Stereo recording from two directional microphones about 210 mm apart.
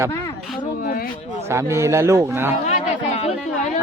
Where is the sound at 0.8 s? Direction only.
45° left (ahead or behind).